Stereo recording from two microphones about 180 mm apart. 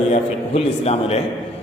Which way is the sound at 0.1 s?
35° left (ahead or behind).